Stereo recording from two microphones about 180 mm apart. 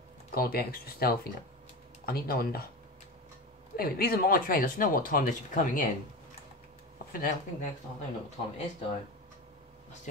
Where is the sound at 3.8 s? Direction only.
55° left (ahead or behind).